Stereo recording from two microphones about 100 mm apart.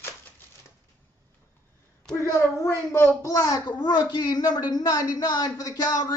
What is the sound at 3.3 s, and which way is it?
Speech, 35° left (ahead or behind).